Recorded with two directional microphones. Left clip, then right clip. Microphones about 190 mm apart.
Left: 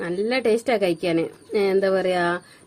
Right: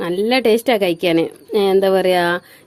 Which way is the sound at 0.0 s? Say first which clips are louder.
Right 6 dB; 35° right (ahead or behind).